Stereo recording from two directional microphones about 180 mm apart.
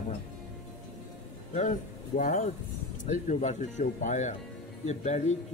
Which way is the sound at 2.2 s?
45° left (ahead or behind).